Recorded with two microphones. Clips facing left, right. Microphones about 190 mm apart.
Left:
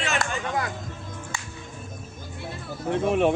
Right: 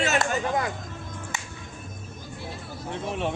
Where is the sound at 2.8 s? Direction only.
60° left (ahead or behind).